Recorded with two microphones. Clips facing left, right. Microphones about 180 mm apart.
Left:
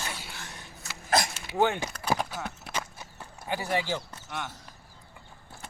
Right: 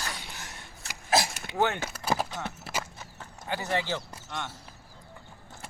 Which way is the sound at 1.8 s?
5° right (ahead or behind).